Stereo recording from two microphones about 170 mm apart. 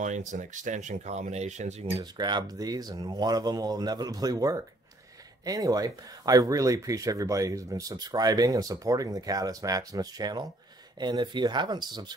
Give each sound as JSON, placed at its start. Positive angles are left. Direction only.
{"t": 0.3, "sound": "speech", "side_deg": -45}
{"t": 1.9, "sound": "speech", "side_deg": -20}